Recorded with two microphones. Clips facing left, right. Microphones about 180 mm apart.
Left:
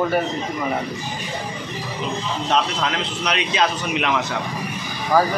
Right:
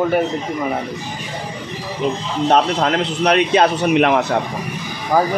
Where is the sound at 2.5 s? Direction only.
50° right (ahead or behind).